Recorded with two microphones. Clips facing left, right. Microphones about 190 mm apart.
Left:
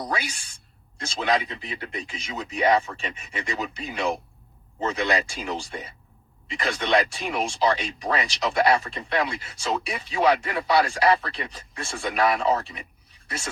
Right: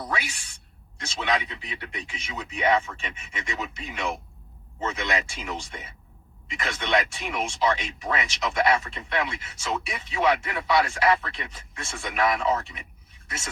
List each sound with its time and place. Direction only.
0.0 s a woman's voice: 35° left (ahead or behind)